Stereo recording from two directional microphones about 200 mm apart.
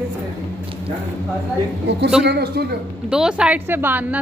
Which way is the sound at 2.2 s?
50° right (ahead or behind).